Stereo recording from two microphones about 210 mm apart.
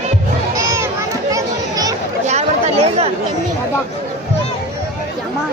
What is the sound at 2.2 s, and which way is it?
Chatter, 30° right (ahead or behind).